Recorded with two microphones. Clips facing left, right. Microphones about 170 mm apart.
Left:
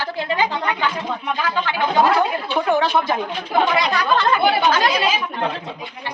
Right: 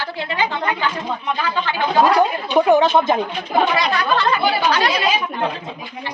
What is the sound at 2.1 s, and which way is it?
A woman's voice, 15° right (ahead or behind).